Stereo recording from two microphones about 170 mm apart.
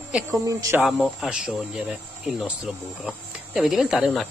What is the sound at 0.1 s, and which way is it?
Speech, 20° right (ahead or behind).